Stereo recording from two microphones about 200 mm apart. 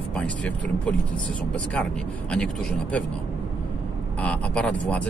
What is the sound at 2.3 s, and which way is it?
Speech, 5° left (ahead or behind).